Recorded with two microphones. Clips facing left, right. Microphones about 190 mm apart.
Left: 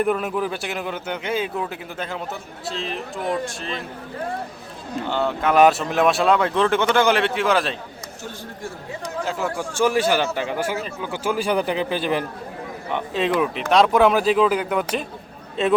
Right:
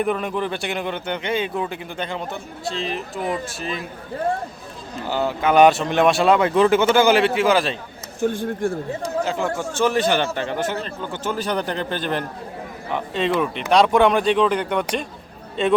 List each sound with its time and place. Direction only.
0.0 s speech: centre (ahead or behind)
5.0 s speech: 5° right (ahead or behind)
8.2 s speech: 55° right (ahead or behind)
9.2 s a man's voice: centre (ahead or behind)